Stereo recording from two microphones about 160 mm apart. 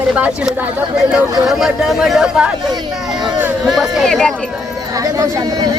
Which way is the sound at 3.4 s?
5° right (ahead or behind).